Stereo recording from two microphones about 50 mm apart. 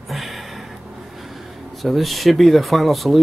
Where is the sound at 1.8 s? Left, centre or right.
Centre.